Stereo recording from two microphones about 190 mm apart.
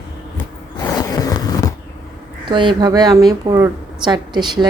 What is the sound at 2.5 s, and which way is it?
A woman's voice, 25° right (ahead or behind).